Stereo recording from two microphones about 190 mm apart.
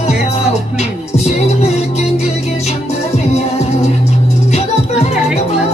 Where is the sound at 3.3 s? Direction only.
35° left (ahead or behind).